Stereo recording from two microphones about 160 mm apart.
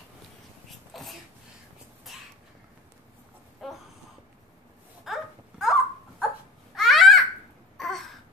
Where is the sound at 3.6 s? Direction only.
Centre (ahead or behind).